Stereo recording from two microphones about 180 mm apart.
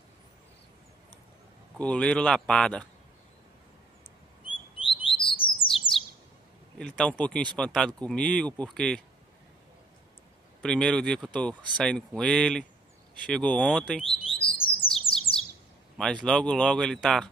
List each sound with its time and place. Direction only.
1.8 s speech: 5° left (ahead or behind)
4.5 s bird: 30° left (ahead or behind)
6.8 s speech: 5° left (ahead or behind)
10.6 s speech: 5° left (ahead or behind)
14.0 s bird: 30° left (ahead or behind)
16.0 s speech: 5° left (ahead or behind)